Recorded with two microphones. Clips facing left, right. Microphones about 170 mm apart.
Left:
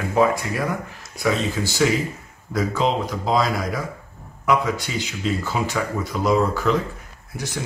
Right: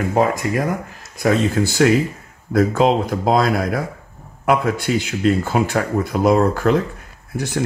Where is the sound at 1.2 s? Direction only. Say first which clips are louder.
Right 5 dB; 55° right (ahead or behind).